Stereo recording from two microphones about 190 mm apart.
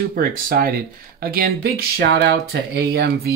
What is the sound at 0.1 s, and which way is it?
Speech, 50° right (ahead or behind).